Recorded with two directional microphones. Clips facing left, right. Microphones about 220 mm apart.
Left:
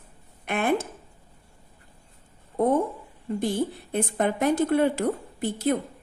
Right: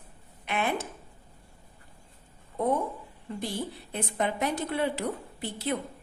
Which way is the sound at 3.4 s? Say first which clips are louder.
Left 8 dB; 50° left (ahead or behind).